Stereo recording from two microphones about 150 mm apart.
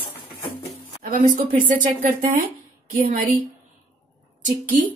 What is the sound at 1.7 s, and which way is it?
Speech, 60° right (ahead or behind).